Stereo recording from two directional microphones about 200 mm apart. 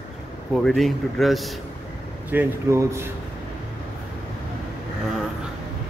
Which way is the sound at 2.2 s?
10° right (ahead or behind).